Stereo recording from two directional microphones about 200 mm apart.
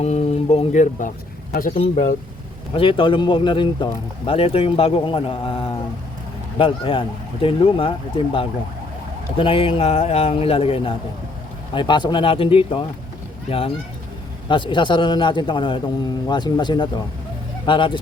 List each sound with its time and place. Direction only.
0.0 s speech: 35° left (ahead or behind)
2.7 s a man's voice: 25° left (ahead or behind)